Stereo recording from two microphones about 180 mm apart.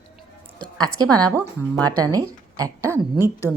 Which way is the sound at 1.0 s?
20° right (ahead or behind).